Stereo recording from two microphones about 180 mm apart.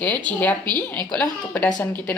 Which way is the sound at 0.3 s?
10° left (ahead or behind).